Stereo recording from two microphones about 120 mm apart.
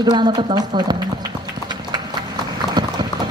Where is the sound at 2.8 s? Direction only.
35° right (ahead or behind).